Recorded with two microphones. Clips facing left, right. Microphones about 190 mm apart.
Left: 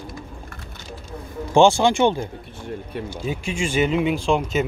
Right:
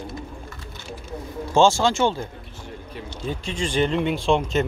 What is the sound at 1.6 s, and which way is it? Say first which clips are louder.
Speech: left 3 dB; 15° left (ahead or behind).